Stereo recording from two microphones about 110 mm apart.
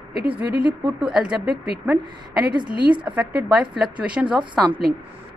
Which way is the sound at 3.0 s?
15° right (ahead or behind).